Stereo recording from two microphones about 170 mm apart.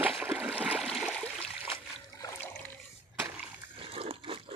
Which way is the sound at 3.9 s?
35° right (ahead or behind).